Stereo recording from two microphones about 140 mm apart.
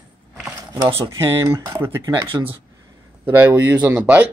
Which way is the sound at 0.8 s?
40° right (ahead or behind).